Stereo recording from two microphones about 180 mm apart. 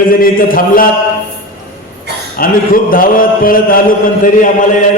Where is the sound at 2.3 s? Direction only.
50° left (ahead or behind).